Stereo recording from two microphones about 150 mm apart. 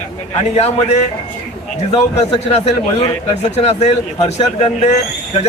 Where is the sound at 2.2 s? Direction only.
45° left (ahead or behind).